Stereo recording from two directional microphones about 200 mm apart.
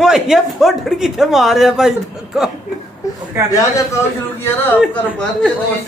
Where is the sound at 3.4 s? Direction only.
15° right (ahead or behind).